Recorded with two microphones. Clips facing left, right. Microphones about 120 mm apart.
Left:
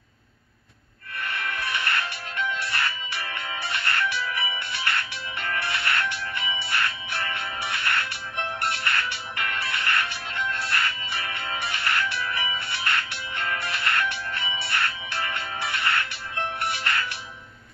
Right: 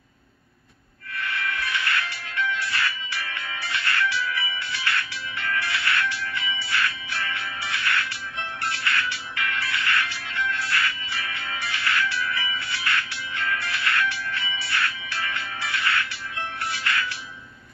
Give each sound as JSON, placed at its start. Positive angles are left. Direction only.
{"t": 1.2, "sound": "music", "side_deg": 50}
{"t": 11.1, "sound": "music", "side_deg": 40}